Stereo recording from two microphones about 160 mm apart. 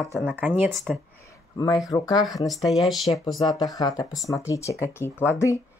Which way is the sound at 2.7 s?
Centre (ahead or behind).